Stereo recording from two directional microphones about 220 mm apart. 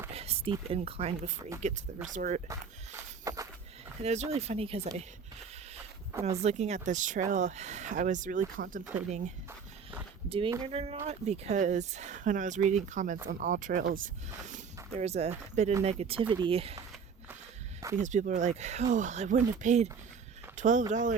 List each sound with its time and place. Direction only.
0.1 s speech: 25° right (ahead or behind)
2.5 s a sound: 15° right (ahead or behind)
4.0 s speech: 30° right (ahead or behind)
6.2 s speech: 30° right (ahead or behind)
14.9 s speech: 30° right (ahead or behind)
18.0 s speech: 35° right (ahead or behind)